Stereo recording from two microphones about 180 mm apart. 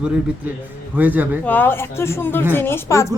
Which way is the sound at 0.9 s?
10° right (ahead or behind).